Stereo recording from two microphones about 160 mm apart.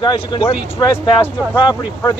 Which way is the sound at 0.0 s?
30° left (ahead or behind).